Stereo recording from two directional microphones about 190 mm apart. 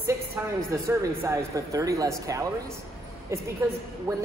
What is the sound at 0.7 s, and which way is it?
Speech, 15° right (ahead or behind).